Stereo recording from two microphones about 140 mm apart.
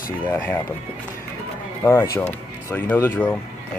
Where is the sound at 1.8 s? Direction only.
15° left (ahead or behind).